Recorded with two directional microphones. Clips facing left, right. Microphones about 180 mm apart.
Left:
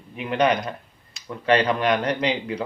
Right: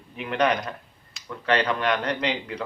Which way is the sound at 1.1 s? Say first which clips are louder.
Left 4 dB; 20° left (ahead or behind).